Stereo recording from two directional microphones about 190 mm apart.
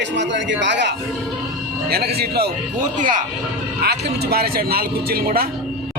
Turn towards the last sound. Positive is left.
turn(degrees=-50)  # may be behind; listen again after turning